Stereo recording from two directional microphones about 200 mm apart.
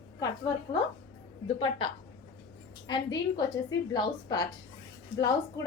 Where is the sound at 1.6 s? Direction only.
25° left (ahead or behind).